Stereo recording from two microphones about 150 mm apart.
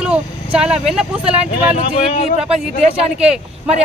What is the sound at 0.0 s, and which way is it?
Speech, 5° right (ahead or behind).